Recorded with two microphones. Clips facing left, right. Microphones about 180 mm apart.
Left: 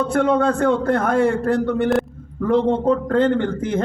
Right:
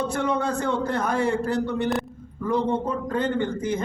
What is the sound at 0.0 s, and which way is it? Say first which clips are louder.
A man's voice: left 7 dB; 55° left (ahead or behind).